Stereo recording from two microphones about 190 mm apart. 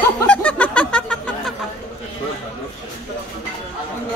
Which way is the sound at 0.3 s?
10° left (ahead or behind).